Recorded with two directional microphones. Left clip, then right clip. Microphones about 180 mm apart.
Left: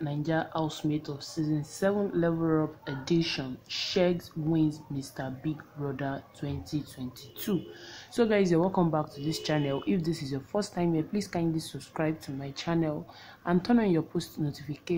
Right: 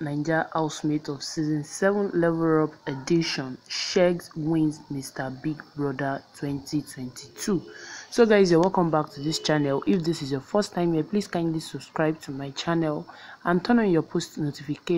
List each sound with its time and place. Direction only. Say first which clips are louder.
0.0 s speech: right 5 dB; 15° right (ahead or behind)